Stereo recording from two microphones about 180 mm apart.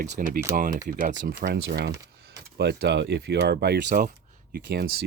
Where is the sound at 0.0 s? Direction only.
50° right (ahead or behind).